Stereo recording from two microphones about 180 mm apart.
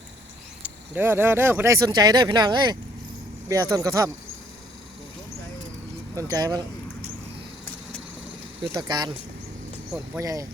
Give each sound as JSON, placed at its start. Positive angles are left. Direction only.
{"t": 0.6, "sound": "speech", "side_deg": -10}
{"t": 6.1, "sound": "speech", "side_deg": -20}
{"t": 8.7, "sound": "speech", "side_deg": -25}
{"t": 10.2, "sound": "speech", "side_deg": -20}